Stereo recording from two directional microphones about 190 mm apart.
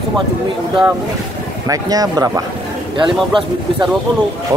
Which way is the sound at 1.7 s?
20° right (ahead or behind).